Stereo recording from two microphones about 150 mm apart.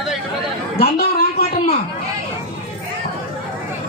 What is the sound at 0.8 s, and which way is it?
Chatter, 90° left.